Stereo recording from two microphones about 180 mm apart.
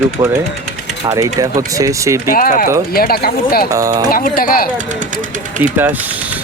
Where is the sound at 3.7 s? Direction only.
20° right (ahead or behind).